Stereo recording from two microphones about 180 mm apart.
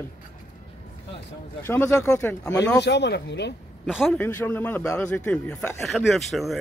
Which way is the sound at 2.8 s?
70° left (ahead or behind).